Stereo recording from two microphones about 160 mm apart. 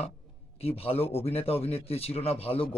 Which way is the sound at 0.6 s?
40° left (ahead or behind).